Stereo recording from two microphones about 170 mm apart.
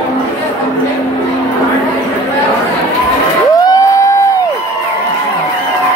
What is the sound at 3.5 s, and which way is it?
Crowd, 20° left (ahead or behind).